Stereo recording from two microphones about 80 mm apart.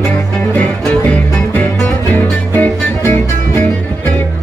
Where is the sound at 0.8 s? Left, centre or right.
Centre.